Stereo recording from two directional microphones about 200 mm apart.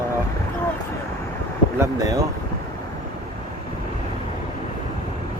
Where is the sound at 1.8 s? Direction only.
15° right (ahead or behind).